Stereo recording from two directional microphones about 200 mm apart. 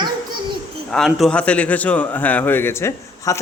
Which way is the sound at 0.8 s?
Centre (ahead or behind).